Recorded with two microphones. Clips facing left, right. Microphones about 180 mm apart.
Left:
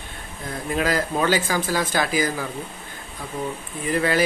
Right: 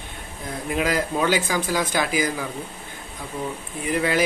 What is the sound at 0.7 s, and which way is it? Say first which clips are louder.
Speech: even; 15° right (ahead or behind).